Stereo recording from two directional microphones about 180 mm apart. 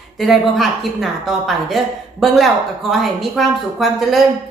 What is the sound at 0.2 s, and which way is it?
Speech, centre (ahead or behind).